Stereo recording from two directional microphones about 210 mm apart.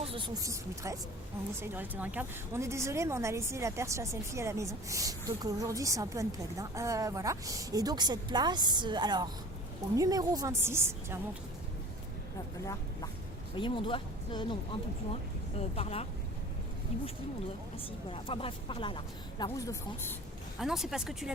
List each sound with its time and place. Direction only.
0.0 s a woman's voice: 25° right (ahead or behind)
13.6 s speech: 25° left (ahead or behind)
15.5 s speech: 30° left (ahead or behind)
20.6 s speech: centre (ahead or behind)